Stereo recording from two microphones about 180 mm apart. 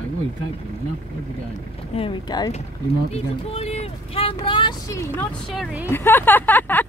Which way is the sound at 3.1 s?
35° left (ahead or behind).